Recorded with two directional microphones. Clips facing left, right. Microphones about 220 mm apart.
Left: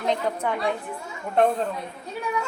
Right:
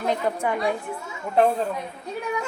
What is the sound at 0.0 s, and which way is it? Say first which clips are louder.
A woman's voice: right 1 dB; 10° right (ahead or behind).